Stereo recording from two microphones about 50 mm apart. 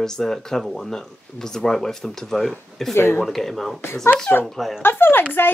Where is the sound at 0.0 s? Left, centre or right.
Centre.